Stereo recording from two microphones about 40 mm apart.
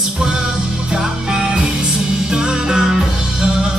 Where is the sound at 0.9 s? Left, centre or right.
Centre.